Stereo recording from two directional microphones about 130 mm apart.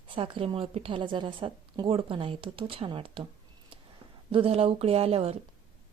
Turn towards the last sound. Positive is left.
turn(degrees=-50)  # may be behind; listen again after turning